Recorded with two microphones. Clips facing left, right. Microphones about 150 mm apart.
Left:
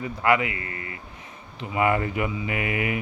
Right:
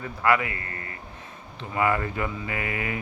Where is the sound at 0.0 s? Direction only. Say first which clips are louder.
Left 1 dB; 20° left (ahead or behind).